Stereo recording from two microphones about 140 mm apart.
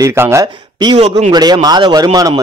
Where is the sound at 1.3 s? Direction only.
30° right (ahead or behind).